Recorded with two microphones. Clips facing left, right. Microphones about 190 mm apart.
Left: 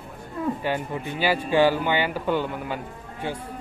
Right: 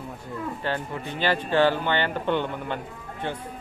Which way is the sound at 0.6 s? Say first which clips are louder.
Left 2 dB; 10° left (ahead or behind).